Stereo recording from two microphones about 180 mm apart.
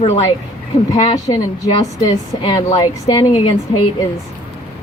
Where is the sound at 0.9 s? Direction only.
20° left (ahead or behind).